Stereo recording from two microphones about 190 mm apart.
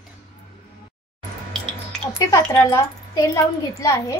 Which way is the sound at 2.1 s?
20° left (ahead or behind).